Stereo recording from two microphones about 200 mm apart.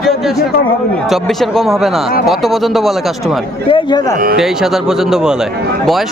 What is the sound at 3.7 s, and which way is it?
Speech, 20° left (ahead or behind).